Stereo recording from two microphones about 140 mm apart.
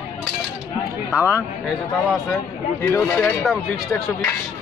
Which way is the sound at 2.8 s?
10° left (ahead or behind).